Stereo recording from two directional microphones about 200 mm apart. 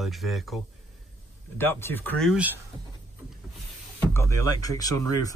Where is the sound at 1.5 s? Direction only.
10° left (ahead or behind).